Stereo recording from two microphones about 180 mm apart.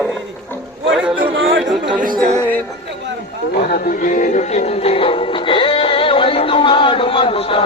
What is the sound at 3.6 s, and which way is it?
Music, 50° left (ahead or behind).